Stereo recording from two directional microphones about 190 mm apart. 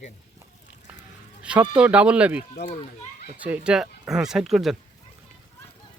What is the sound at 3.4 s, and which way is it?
Speech, 5° right (ahead or behind).